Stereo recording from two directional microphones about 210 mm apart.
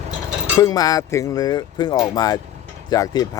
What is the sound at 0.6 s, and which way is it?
Speech, 15° left (ahead or behind).